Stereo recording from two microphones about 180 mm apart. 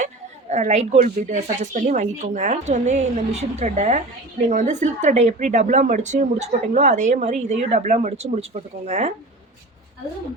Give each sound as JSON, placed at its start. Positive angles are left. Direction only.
{"t": 0.5, "sound": "speech", "side_deg": -40}